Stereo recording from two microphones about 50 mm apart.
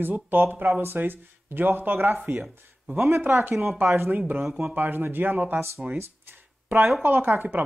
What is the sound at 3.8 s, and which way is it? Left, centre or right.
Speech, right.